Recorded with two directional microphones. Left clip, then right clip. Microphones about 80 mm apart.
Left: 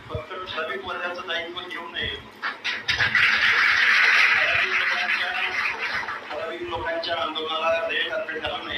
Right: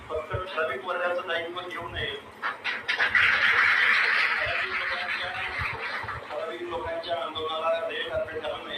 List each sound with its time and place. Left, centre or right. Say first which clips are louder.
0.5 s a man's voice: even; centre
2.0 s duck: left 5 dB; centre
3.9 s a sound: left 6 dB; left
6.7 s music: left 5 dB; left